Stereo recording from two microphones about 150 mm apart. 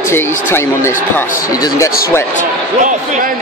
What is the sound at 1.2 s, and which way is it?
Speech, 70° left (ahead or behind).